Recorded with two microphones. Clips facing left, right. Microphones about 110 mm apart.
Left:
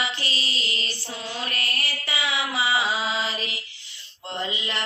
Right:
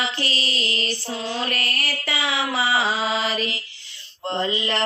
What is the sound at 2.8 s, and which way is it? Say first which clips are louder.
Mantra: right 3 dB; 50° right (ahead or behind).